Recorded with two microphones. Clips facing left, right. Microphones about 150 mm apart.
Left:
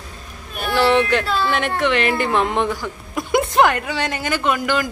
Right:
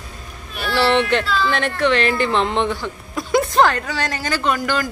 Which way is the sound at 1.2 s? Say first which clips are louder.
Even; 55° left (ahead or behind).